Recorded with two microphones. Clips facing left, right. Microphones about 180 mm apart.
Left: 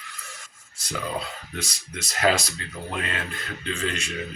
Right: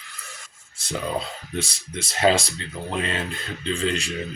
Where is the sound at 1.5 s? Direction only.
30° right (ahead or behind).